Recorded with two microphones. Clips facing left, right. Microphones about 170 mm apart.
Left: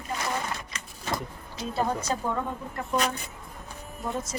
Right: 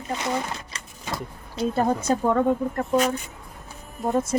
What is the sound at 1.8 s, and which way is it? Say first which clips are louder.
Speech: right 5 dB; 50° right (ahead or behind).